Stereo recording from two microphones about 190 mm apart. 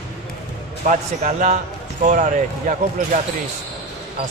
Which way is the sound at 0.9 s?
40° right (ahead or behind).